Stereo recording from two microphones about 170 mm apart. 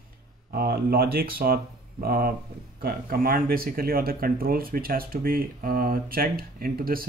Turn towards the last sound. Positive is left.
turn(degrees=-60)  # may be behind; listen again after turning